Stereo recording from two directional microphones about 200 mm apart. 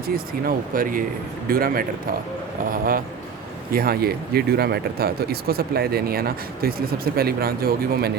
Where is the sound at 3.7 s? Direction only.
50° right (ahead or behind).